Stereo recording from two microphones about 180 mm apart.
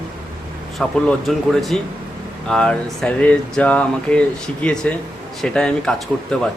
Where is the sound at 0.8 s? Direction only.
Centre (ahead or behind).